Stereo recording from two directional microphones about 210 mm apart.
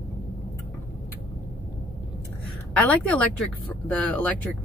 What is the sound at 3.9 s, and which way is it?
Speech, 5° left (ahead or behind).